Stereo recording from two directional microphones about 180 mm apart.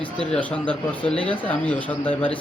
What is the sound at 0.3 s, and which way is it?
Speech, 5° left (ahead or behind).